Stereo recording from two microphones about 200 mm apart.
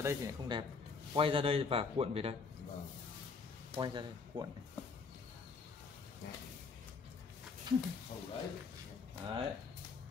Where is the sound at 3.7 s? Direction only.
25° right (ahead or behind).